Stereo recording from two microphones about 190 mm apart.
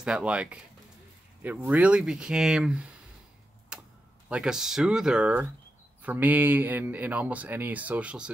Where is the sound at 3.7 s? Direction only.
5° right (ahead or behind).